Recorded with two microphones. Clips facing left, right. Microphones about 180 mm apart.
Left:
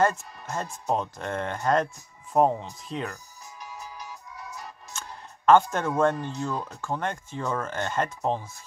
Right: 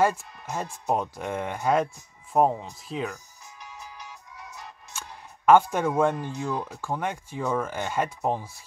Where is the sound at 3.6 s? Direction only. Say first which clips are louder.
Left 3 dB; 40° left (ahead or behind).